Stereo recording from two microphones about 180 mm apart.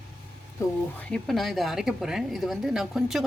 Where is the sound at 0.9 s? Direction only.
Centre (ahead or behind).